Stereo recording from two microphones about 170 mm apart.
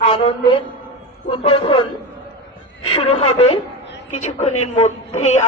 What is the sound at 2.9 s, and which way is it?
A woman's voice, 35° left (ahead or behind).